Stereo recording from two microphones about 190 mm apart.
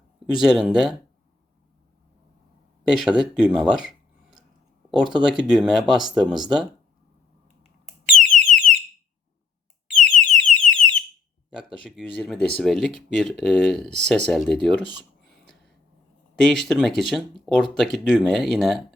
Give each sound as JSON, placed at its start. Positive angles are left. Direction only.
{"t": 0.3, "sound": "speech", "side_deg": 0}
{"t": 2.8, "sound": "speech", "side_deg": 0}
{"t": 8.3, "sound": "alarm", "side_deg": 45}
{"t": 10.0, "sound": "alarm", "side_deg": 5}
{"t": 11.5, "sound": "speech", "side_deg": -5}
{"t": 16.3, "sound": "speech", "side_deg": 5}